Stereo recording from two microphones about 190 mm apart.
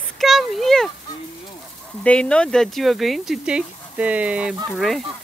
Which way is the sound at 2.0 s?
5° left (ahead or behind).